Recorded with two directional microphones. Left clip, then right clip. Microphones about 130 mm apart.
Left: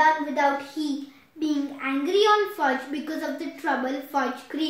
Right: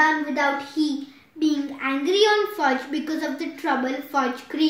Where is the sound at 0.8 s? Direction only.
30° right (ahead or behind).